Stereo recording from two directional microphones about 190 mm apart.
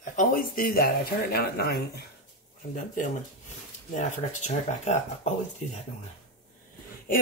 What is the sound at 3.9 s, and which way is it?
Speech, 40° left (ahead or behind).